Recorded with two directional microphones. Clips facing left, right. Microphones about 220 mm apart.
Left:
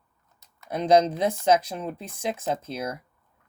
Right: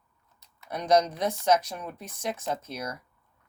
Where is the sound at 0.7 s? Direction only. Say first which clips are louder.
Left 4 dB; 25° left (ahead or behind).